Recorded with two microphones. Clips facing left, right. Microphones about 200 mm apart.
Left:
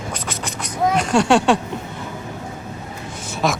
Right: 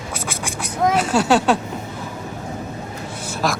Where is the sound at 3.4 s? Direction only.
Centre (ahead or behind).